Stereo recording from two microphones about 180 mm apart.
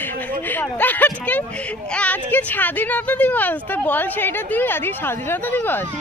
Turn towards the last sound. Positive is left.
turn(degrees=10)  # may be behind; listen again after turning